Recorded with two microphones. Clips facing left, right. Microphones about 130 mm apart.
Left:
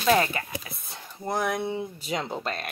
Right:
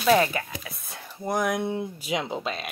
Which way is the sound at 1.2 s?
10° right (ahead or behind).